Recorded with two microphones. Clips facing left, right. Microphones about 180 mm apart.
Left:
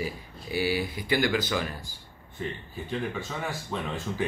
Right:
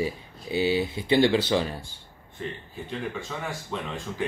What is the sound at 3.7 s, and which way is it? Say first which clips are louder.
Speech: even; 5° left (ahead or behind).